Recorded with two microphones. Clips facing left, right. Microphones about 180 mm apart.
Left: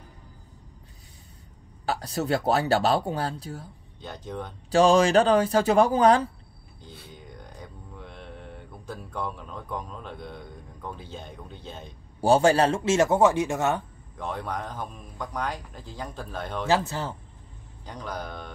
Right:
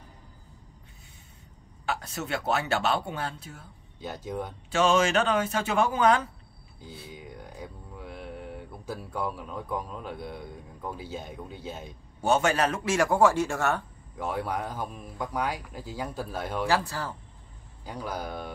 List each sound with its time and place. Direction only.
1.9 s speech: 35° left (ahead or behind)
4.0 s speech: 10° right (ahead or behind)
4.6 s speech: 35° left (ahead or behind)
6.8 s mantra: 10° right (ahead or behind)
12.2 s a man's voice: 35° left (ahead or behind)
14.1 s speech: 10° right (ahead or behind)
16.6 s a man's voice: 20° left (ahead or behind)
17.8 s speech: 10° right (ahead or behind)